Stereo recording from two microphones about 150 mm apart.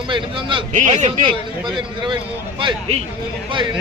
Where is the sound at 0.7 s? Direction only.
55° right (ahead or behind).